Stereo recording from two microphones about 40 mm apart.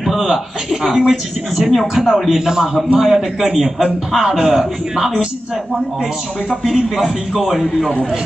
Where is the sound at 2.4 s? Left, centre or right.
Centre.